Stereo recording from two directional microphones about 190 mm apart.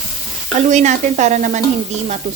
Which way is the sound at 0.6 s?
40° right (ahead or behind).